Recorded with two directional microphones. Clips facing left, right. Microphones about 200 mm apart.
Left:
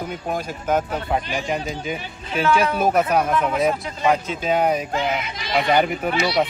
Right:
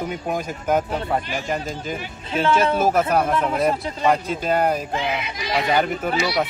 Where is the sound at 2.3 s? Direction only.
30° right (ahead or behind).